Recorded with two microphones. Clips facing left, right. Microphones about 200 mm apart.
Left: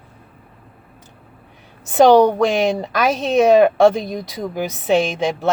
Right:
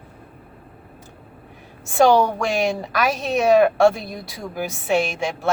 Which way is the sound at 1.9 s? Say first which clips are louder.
Left 5 dB; 20° left (ahead or behind).